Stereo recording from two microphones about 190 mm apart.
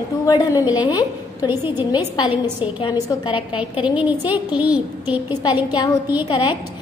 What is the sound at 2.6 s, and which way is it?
Speech, 25° left (ahead or behind).